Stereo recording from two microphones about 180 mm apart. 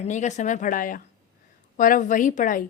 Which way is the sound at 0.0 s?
40° left (ahead or behind).